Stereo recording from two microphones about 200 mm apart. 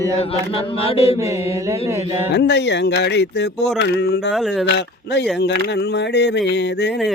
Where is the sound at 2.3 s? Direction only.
60° left (ahead or behind).